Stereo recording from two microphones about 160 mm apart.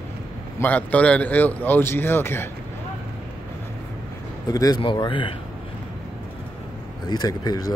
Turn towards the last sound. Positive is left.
turn(degrees=25)  # may be behind; listen again after turning